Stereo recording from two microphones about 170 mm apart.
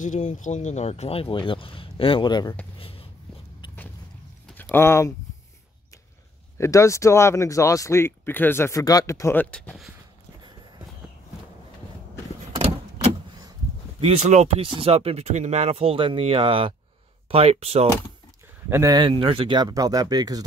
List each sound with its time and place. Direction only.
0.0 s speech: 45° left (ahead or behind); by 2.5 s 25° left (ahead or behind)
2.8 s a sound: 35° left (ahead or behind)
4.5 s a sound: 10° left (ahead or behind)
6.6 s speech: 15° left (ahead or behind); by 9.9 s centre (ahead or behind)
12.5 s vehicle: 30° right (ahead or behind)
13.9 s speech: 35° right (ahead or behind)
18.7 s speech: 20° right (ahead or behind)